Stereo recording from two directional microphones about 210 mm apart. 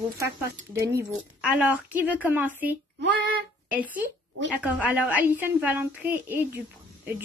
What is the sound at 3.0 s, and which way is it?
Child singing, 55° right (ahead or behind).